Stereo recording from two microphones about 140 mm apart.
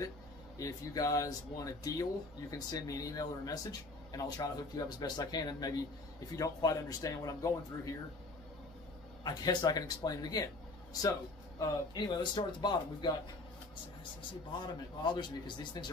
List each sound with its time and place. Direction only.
0.6 s a man's voice: 25° left (ahead or behind)
9.2 s speech: 30° left (ahead or behind)
15.0 s speech: 35° left (ahead or behind)